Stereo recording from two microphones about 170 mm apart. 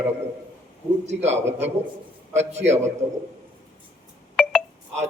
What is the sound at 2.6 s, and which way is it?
Speech, 40° right (ahead or behind).